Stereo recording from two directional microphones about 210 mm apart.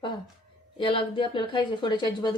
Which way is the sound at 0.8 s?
25° left (ahead or behind).